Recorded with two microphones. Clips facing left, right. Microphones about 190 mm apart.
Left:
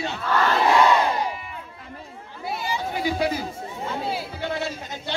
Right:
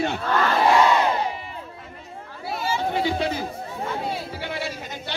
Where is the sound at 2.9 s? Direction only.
25° right (ahead or behind).